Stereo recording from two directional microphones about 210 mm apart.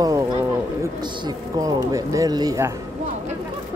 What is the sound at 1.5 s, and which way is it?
Speech, 15° right (ahead or behind).